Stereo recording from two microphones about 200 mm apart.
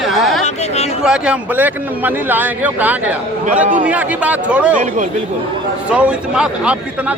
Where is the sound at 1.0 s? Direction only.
5° right (ahead or behind).